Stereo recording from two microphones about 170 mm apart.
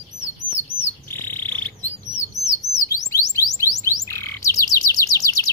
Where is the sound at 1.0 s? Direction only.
15° left (ahead or behind).